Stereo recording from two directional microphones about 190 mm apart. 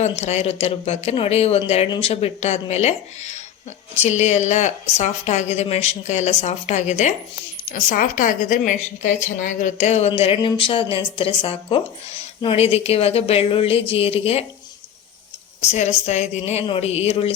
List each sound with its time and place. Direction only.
0.2 s a woman's voice: 35° left (ahead or behind)
15.6 s a woman's voice: 35° left (ahead or behind)